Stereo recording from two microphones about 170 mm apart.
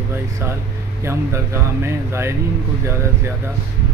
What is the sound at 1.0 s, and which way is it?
Speech, 15° right (ahead or behind).